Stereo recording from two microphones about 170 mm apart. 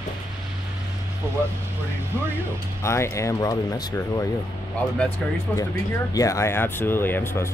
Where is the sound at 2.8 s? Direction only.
15° left (ahead or behind).